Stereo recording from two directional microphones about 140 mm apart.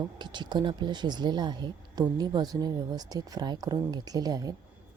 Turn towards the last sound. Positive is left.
turn(degrees=-25)  # may be behind; listen again after turning